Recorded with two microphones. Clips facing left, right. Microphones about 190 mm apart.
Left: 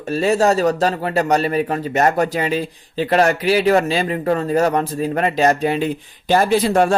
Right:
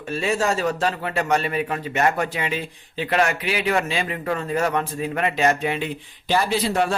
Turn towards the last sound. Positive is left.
turn(degrees=50)  # may be behind; listen again after turning